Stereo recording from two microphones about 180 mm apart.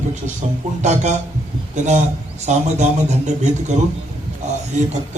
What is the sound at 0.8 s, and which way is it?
Speech, 40° right (ahead or behind).